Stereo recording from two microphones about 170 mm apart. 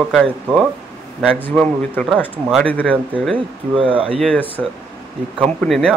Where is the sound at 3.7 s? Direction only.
30° right (ahead or behind).